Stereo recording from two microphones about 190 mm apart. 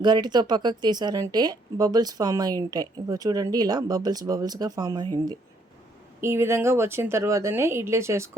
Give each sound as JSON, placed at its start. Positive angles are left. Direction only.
{"t": 0.0, "sound": "speech", "side_deg": -20}
{"t": 6.2, "sound": "speech", "side_deg": -15}